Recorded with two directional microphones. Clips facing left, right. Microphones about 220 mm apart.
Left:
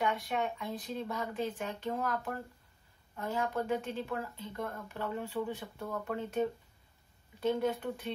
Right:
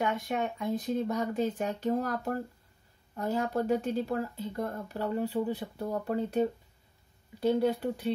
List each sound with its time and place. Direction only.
0.0 s speech: 45° right (ahead or behind)